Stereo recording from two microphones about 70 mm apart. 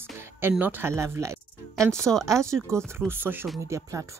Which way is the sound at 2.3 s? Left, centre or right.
Right.